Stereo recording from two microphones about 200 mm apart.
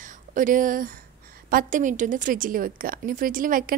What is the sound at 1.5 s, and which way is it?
A woman's voice, 40° right (ahead or behind).